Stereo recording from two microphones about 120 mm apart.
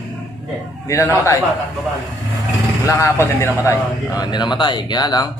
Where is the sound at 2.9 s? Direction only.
25° left (ahead or behind).